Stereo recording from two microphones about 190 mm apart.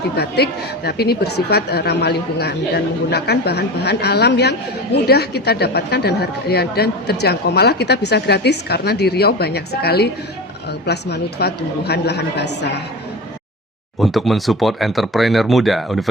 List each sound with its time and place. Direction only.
0.2 s a woman's voice: 60° left (ahead or behind)
14.0 s speech: centre (ahead or behind)